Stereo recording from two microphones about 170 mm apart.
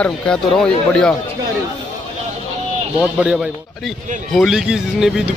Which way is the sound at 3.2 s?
5° right (ahead or behind).